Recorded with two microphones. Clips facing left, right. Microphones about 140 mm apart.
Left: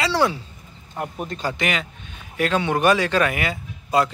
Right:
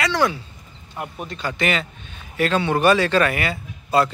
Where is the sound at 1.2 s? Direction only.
45° left (ahead or behind).